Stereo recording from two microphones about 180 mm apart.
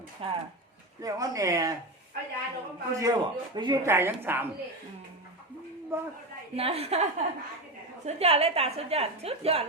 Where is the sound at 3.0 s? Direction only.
20° right (ahead or behind).